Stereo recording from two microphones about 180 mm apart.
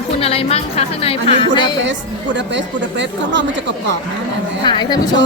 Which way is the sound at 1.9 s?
90° right.